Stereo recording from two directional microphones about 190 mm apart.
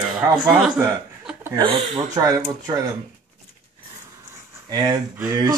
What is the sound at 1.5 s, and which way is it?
Speech, 30° right (ahead or behind).